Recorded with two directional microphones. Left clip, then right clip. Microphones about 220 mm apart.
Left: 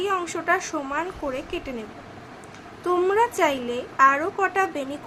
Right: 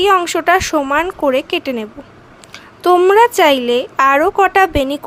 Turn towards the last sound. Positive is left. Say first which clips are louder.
# right 12 dB
turn(degrees=-45)  # may be behind; listen again after turning